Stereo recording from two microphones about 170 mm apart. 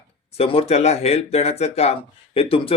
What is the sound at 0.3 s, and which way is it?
A man's voice, 35° left (ahead or behind).